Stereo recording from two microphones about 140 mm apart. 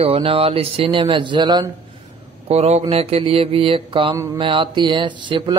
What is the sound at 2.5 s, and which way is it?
A man's voice, 50° right (ahead or behind).